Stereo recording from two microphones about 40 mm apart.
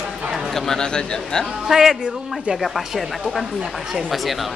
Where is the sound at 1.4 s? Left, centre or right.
Centre.